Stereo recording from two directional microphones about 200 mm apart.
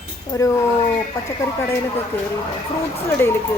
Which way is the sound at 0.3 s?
15° left (ahead or behind).